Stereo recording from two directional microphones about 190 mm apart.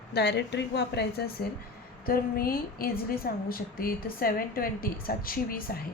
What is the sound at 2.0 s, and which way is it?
A woman's voice, 50° left (ahead or behind).